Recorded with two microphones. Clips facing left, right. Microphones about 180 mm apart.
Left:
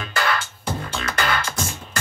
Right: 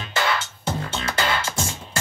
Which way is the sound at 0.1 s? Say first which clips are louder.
Even; 25° right (ahead or behind).